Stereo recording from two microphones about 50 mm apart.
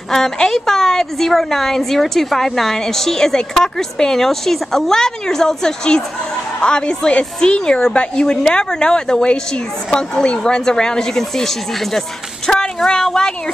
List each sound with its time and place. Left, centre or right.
0.1 s a woman's voice: centre